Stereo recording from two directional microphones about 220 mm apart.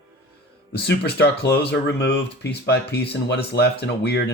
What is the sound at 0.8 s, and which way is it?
Speech, 50° left (ahead or behind).